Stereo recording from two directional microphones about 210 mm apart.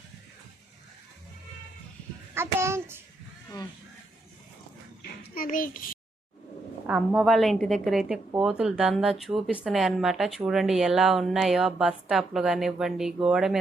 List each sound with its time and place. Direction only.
2.3 s a child's voice: 10° right (ahead or behind)
5.2 s child singing: 45° left (ahead or behind)
6.8 s a woman's voice: centre (ahead or behind)